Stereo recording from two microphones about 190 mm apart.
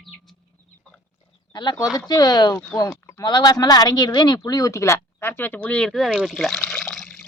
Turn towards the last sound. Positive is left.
turn(degrees=5)  # may be behind; listen again after turning